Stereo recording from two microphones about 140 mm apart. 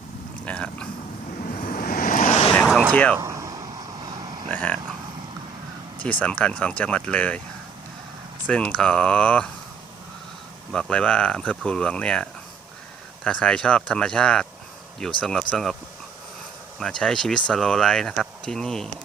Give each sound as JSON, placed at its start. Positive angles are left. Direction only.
{"t": 0.4, "sound": "speech", "side_deg": 10}
{"t": 1.4, "sound": "vehicle", "side_deg": 90}
{"t": 2.5, "sound": "vehicle", "side_deg": 5}
{"t": 2.9, "sound": "speech", "side_deg": 10}
{"t": 3.2, "sound": "a sound", "side_deg": -20}
{"t": 4.4, "sound": "vehicle", "side_deg": 10}
{"t": 6.0, "sound": "speech", "side_deg": 10}
{"t": 8.4, "sound": "speech", "side_deg": 10}
{"t": 10.7, "sound": "speech", "side_deg": 5}
{"t": 16.7, "sound": "speech", "side_deg": 5}